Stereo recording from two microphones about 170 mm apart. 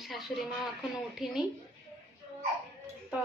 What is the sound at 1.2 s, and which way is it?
Speech, centre (ahead or behind).